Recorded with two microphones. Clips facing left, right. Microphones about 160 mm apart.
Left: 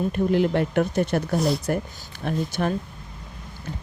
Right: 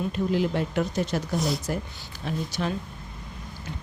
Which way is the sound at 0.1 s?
60° left (ahead or behind).